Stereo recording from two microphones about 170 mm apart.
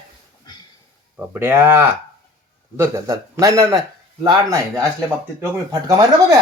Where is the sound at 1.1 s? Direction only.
10° right (ahead or behind).